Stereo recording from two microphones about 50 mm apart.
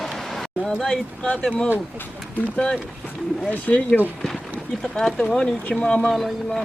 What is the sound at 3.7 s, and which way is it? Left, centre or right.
Speech, left.